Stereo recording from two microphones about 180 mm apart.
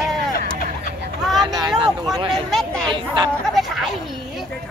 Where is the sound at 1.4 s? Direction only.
20° right (ahead or behind).